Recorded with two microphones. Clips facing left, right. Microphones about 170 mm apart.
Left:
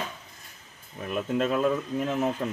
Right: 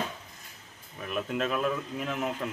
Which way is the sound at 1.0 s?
30° left (ahead or behind).